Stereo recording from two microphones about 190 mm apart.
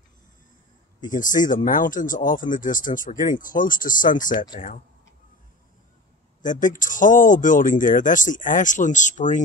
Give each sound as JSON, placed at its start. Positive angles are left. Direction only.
{"t": 1.0, "sound": "speech", "side_deg": 45}
{"t": 6.4, "sound": "speech", "side_deg": 45}